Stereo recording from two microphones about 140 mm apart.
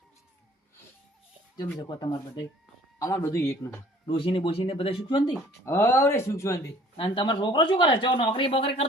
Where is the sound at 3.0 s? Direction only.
25° left (ahead or behind).